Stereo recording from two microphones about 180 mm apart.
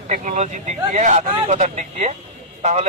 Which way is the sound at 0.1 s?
40° right (ahead or behind).